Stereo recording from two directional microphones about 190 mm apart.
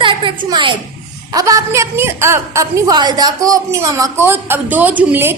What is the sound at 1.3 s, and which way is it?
A woman's voice, 15° right (ahead or behind).